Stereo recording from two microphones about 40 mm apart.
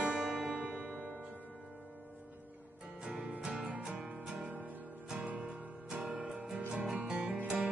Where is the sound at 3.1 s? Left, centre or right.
Right.